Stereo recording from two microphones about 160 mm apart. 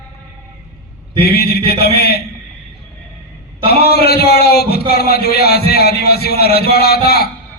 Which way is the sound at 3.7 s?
80° left.